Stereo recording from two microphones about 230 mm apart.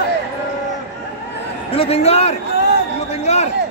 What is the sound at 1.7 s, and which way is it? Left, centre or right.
Speech, left.